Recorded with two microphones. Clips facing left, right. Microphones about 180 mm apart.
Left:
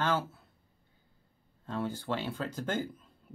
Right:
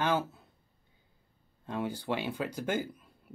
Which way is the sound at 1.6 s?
15° right (ahead or behind).